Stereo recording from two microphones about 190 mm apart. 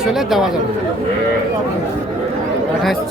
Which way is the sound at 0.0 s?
Centre (ahead or behind).